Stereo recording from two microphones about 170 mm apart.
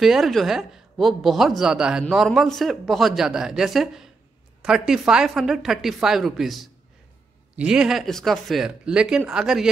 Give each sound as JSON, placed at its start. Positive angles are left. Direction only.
{"t": 0.0, "sound": "a woman's voice", "side_deg": 0}